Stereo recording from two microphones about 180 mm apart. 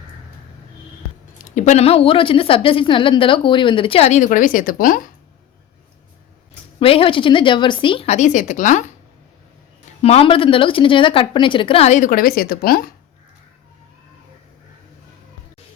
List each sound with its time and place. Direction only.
1.5 s a woman's voice: 40° left (ahead or behind)
6.7 s a woman's voice: 30° left (ahead or behind)
10.0 s a woman's voice: 35° left (ahead or behind); by 12.9 s 55° left (ahead or behind)